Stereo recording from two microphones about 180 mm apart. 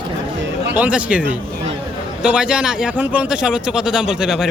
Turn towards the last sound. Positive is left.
turn(degrees=-5)  # may be behind; listen again after turning